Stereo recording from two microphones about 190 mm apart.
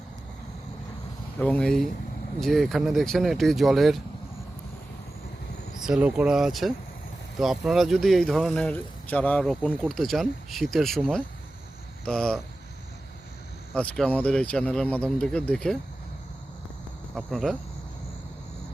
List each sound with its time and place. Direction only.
1.4 s speech: 5° left (ahead or behind)
5.8 s speech: 5° right (ahead or behind)
13.7 s speech: 5° left (ahead or behind)
17.2 s speech: centre (ahead or behind)